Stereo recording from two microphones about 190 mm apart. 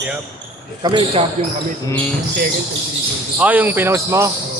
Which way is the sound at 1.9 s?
10° left (ahead or behind).